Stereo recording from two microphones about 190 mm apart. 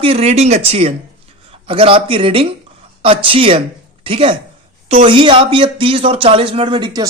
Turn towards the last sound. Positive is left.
turn(degrees=-25)  # may be behind; listen again after turning